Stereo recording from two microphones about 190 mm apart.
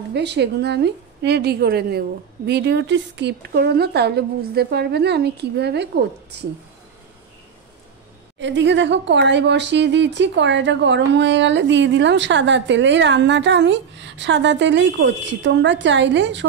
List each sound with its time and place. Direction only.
0.1 s a woman's voice: 60° right (ahead or behind)
8.4 s speech: 70° right (ahead or behind)